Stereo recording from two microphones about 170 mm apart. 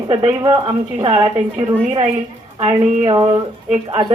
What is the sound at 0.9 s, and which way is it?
Speech, 30° right (ahead or behind).